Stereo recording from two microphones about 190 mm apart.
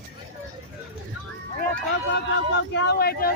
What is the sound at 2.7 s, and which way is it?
Vehicle, 55° left (ahead or behind).